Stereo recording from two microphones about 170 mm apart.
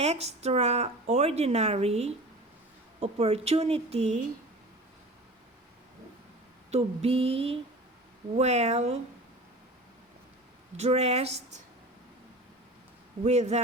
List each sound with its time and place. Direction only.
0.0 s speech: 40° right (ahead or behind)
6.7 s speech: 35° right (ahead or behind)
10.8 s speech: 40° right (ahead or behind)
13.2 s speech: 40° right (ahead or behind)